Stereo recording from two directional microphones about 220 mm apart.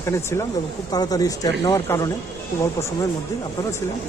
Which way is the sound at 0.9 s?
15° left (ahead or behind).